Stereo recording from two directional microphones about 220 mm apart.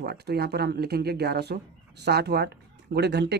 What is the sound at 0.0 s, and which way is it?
Speech, 45° right (ahead or behind).